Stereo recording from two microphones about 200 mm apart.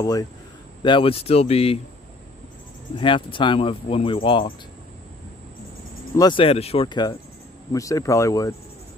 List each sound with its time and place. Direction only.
0.0 s speech: 20° left (ahead or behind)
3.0 s speech: 25° left (ahead or behind)
6.1 s speech: 25° left (ahead or behind)